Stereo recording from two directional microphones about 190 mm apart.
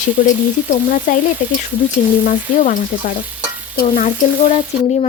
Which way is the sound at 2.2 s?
40° left (ahead or behind).